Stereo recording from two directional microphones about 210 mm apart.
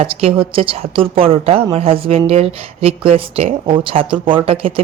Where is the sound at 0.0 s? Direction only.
25° right (ahead or behind).